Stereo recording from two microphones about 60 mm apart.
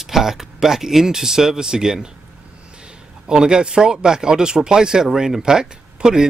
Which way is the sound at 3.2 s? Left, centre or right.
Centre.